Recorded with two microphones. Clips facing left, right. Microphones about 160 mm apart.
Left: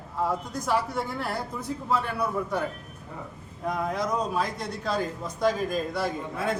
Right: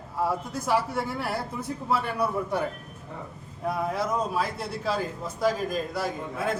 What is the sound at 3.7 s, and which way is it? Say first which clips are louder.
A man's voice: even; 5° right (ahead or behind).